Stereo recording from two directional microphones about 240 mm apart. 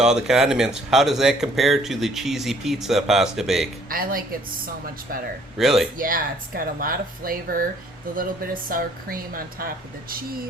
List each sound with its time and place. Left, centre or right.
0.0 s speech: centre
3.8 s speech: right
5.5 s speech: centre
6.0 s speech: right